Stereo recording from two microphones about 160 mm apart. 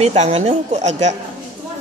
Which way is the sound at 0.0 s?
40° right (ahead or behind).